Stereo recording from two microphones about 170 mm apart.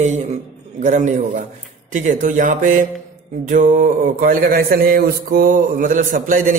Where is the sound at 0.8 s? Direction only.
45° right (ahead or behind).